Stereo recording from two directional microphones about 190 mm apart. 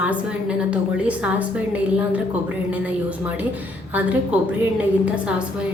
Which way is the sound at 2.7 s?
10° right (ahead or behind).